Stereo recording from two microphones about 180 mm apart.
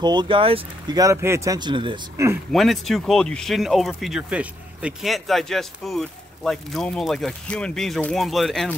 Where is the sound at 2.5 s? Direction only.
Centre (ahead or behind).